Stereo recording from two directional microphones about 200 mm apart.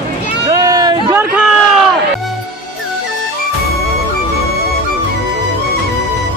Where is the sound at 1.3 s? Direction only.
5° right (ahead or behind).